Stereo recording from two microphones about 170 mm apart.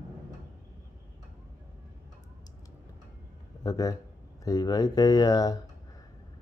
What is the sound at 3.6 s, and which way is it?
Speech, 20° left (ahead or behind).